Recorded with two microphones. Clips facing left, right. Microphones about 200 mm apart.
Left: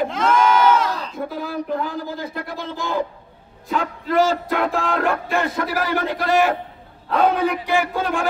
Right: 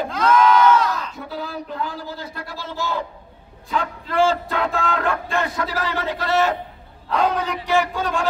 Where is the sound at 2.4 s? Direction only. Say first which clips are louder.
Left 1 dB; 15° left (ahead or behind).